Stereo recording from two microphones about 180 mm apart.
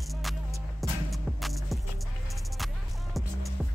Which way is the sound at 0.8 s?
Centre (ahead or behind).